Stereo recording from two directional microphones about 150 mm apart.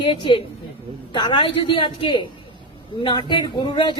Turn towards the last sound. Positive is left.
turn(degrees=30)  # may be behind; listen again after turning